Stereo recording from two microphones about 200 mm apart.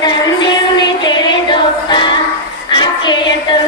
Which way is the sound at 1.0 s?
20° left (ahead or behind).